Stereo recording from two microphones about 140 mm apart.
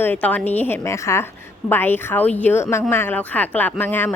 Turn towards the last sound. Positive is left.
turn(degrees=15)  # may be behind; listen again after turning